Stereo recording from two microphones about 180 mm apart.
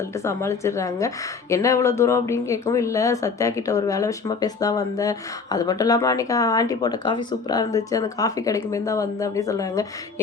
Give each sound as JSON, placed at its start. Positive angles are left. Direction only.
{"t": 0.3, "sound": "a woman's voice", "side_deg": 15}